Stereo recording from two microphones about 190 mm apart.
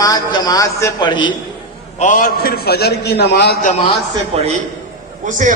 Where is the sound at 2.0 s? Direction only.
45° left (ahead or behind); by 3.5 s 60° left (ahead or behind).